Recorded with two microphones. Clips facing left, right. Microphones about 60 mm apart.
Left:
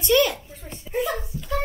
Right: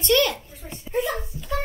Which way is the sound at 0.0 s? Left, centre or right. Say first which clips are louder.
Left 1 dB; centre.